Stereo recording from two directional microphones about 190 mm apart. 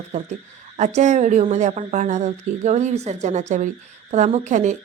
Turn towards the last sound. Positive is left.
turn(degrees=-40)  # may be behind; listen again after turning